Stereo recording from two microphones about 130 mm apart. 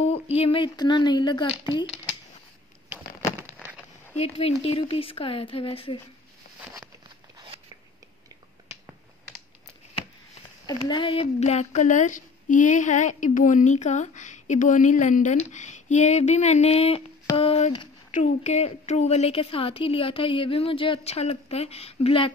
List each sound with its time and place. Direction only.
0.0 s speech: 50° left (ahead or behind)
0.7 s speech: 35° left (ahead or behind)
4.2 s a woman's voice: 55° left (ahead or behind)
10.9 s a woman's voice: 45° left (ahead or behind)
18.1 s a woman's voice: 65° left (ahead or behind); by 22.3 s 45° left (ahead or behind)